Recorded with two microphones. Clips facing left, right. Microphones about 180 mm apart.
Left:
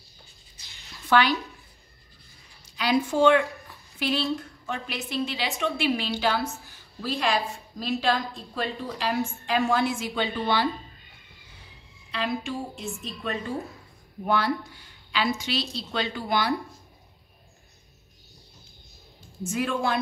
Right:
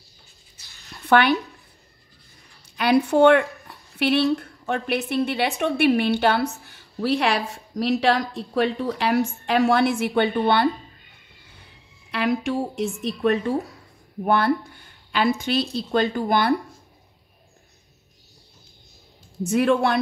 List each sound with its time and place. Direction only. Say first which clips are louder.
0.9 s a sound: right 4 dB; 60° right (ahead or behind)
2.8 s a woman's voice: right 5 dB; 65° right (ahead or behind)
12.1 s speech: right 6 dB; 70° right (ahead or behind)
14.2 s a woman's voice: right 5 dB; 55° right (ahead or behind)
19.4 s speech: right 8 dB; 65° right (ahead or behind)